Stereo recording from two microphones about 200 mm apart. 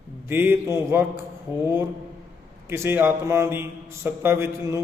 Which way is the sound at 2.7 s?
10° right (ahead or behind).